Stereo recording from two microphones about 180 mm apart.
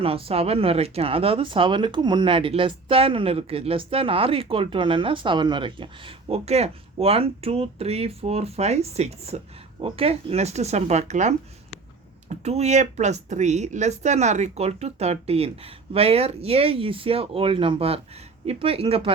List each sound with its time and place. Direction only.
0.0 s speech: 30° right (ahead or behind)